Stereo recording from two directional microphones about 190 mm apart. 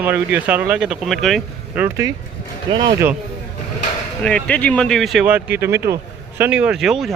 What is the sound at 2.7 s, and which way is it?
Speech, 25° right (ahead or behind).